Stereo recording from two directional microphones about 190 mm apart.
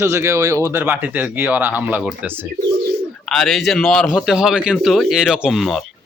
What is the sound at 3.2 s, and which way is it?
Speech, centre (ahead or behind).